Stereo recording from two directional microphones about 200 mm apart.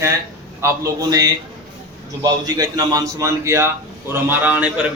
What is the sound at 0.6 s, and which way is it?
A man's voice, 15° right (ahead or behind).